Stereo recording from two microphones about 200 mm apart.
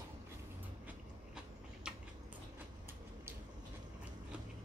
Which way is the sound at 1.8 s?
5° right (ahead or behind).